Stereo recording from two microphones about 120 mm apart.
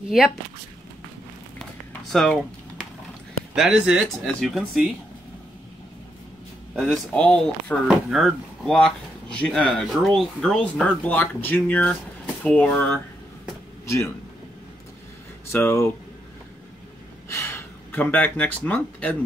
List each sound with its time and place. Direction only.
1.6 s a sound: 5° left (ahead or behind)
3.5 s speech: 5° right (ahead or behind)
6.7 s speech: 5° left (ahead or behind)
13.8 s a man's voice: 25° left (ahead or behind)
15.5 s speech: 20° left (ahead or behind)
17.3 s gasp: 25° left (ahead or behind)
18.1 s speech: 10° left (ahead or behind)